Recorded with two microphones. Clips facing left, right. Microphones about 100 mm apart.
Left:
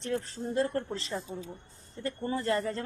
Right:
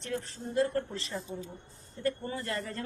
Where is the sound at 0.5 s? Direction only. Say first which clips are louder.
Right 1 dB; 35° left (ahead or behind).